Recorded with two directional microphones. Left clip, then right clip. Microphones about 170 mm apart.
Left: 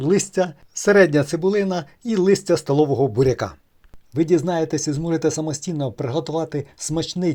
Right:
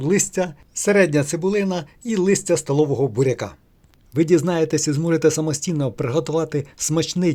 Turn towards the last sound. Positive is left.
turn(degrees=-25)  # may be behind; listen again after turning